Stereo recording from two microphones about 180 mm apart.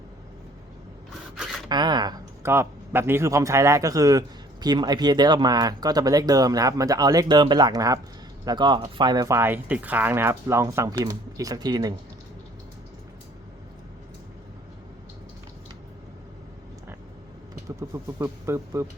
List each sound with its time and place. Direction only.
1.7 s speech: 25° right (ahead or behind)
17.5 s speech: 20° right (ahead or behind)